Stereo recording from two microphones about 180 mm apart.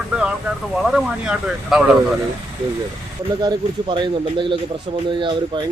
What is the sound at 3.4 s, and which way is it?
Speech, 25° right (ahead or behind).